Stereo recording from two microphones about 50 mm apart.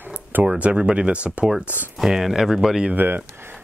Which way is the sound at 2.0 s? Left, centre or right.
Centre.